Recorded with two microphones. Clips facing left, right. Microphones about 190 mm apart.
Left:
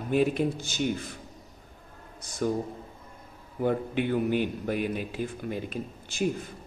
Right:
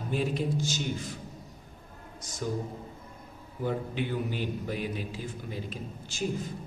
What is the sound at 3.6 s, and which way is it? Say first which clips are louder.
A man's voice: left 5 dB; 55° left (ahead or behind).